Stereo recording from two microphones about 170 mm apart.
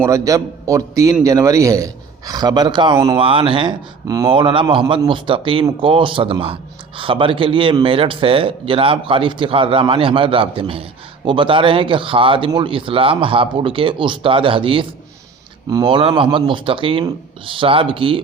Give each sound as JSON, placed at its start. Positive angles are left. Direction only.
{"t": 0.0, "sound": "a man's voice", "side_deg": -20}